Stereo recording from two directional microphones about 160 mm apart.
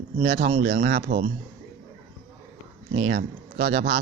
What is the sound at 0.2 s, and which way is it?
Speech, 75° right (ahead or behind).